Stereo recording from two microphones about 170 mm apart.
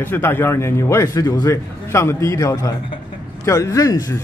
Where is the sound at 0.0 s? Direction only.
10° left (ahead or behind).